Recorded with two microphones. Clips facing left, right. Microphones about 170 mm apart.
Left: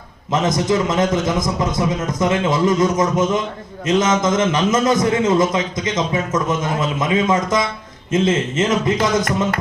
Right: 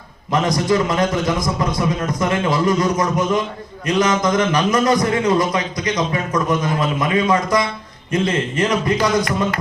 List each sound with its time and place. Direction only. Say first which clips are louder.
0.3 s a man's voice: even; 20° left (ahead or behind)